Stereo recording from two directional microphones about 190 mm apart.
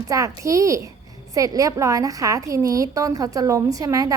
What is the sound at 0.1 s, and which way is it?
A woman's voice, 15° right (ahead or behind).